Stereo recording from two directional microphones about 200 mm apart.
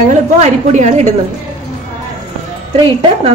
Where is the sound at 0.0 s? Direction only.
35° right (ahead or behind).